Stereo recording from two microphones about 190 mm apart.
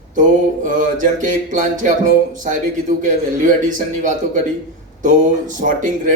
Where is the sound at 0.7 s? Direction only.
40° right (ahead or behind).